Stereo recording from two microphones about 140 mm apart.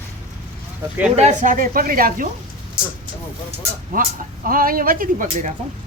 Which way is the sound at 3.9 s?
90° right.